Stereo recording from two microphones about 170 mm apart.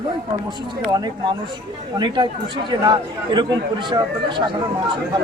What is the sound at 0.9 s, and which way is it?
Speech, 25° right (ahead or behind).